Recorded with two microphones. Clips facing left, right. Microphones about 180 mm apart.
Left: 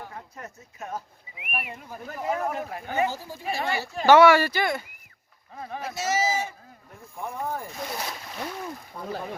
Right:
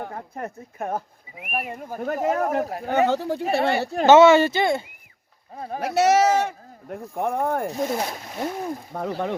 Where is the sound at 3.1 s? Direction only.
65° right (ahead or behind).